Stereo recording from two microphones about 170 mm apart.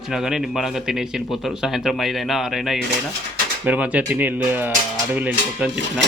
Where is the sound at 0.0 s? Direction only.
Centre (ahead or behind).